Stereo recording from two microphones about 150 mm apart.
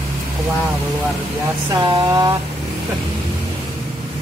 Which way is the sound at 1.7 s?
20° right (ahead or behind).